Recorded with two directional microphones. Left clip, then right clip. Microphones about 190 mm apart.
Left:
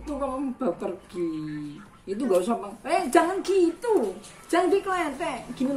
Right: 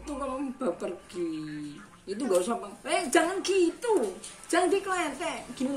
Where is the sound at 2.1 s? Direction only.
5° left (ahead or behind).